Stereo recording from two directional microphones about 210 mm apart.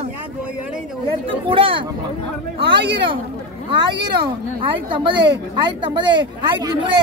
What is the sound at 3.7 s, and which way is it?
Speech, 20° right (ahead or behind).